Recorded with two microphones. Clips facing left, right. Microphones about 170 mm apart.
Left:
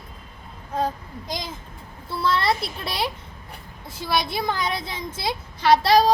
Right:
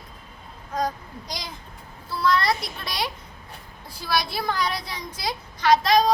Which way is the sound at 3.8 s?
20° left (ahead or behind).